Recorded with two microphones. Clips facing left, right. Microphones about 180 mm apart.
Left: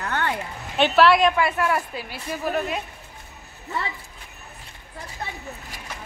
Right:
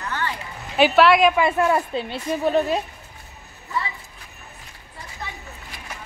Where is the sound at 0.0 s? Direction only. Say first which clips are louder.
Left 2 dB; 60° left (ahead or behind).